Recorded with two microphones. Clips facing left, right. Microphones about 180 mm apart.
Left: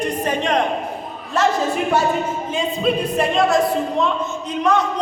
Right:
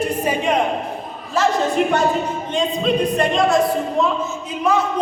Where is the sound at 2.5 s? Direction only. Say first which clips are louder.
Right 2 dB; 5° left (ahead or behind).